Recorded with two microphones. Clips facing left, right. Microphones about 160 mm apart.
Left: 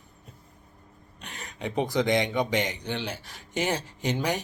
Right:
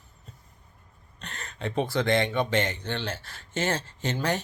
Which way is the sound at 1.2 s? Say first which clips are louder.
Right 1 dB; 10° left (ahead or behind).